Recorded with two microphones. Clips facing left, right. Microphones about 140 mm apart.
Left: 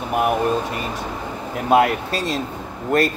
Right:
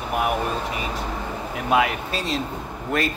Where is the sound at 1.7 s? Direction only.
40° left (ahead or behind).